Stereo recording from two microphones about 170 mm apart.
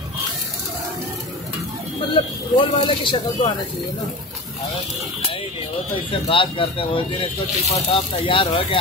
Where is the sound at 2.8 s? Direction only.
30° left (ahead or behind).